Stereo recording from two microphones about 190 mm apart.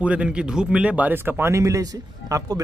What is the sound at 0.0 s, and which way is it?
Speech, 5° right (ahead or behind).